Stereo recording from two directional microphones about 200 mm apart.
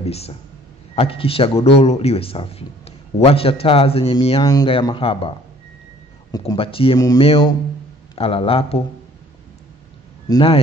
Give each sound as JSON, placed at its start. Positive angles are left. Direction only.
{"t": 0.0, "sound": "a man's voice", "side_deg": 30}
{"t": 6.3, "sound": "a man's voice", "side_deg": 25}
{"t": 10.2, "sound": "speech", "side_deg": 25}